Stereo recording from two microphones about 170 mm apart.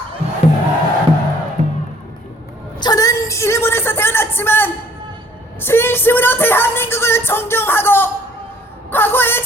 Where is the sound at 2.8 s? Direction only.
20° left (ahead or behind).